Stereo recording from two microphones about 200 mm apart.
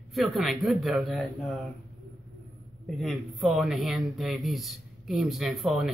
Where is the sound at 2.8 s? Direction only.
Centre (ahead or behind).